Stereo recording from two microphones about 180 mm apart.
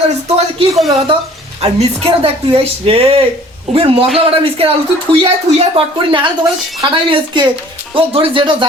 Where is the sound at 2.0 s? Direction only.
30° right (ahead or behind).